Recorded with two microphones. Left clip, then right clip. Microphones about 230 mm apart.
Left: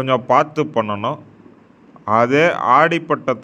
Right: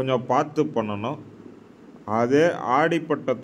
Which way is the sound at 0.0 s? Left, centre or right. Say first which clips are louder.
Left 7 dB; left.